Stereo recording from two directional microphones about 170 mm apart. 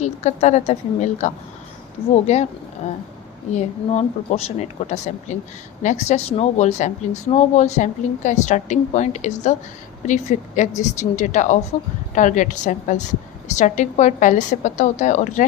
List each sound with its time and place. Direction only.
0.0 s speech: 40° left (ahead or behind)
3.5 s speech: 40° left (ahead or behind)